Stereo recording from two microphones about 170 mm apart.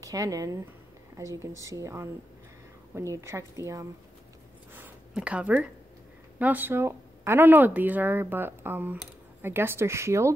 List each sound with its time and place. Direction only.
0.0 s speech: 20° right (ahead or behind)
4.7 s a sound: 10° right (ahead or behind)
6.4 s speech: 10° right (ahead or behind)